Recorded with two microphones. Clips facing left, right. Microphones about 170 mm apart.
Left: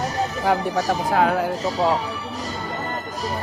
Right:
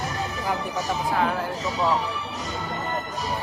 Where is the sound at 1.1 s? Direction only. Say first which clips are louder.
Left 5 dB; 85° left.